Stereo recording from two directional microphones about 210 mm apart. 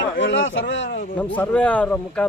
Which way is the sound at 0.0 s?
60° left (ahead or behind).